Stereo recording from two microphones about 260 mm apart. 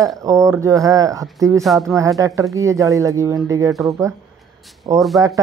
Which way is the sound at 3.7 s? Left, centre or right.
Centre.